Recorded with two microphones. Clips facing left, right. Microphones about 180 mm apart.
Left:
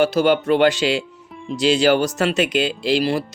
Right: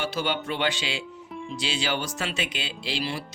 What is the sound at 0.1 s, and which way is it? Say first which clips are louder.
Speech: left 12 dB; 40° left (ahead or behind).